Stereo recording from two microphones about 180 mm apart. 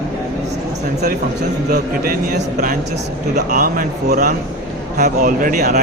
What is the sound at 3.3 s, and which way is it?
Speech, 50° right (ahead or behind).